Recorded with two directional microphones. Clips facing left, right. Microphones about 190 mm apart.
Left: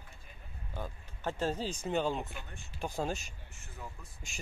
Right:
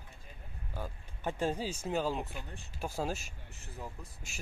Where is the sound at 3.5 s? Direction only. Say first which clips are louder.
Right 3 dB; 35° right (ahead or behind).